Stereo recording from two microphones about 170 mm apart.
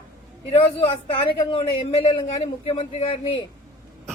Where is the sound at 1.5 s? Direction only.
30° left (ahead or behind).